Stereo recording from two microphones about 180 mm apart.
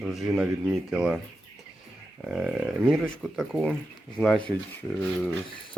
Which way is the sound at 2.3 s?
5° right (ahead or behind).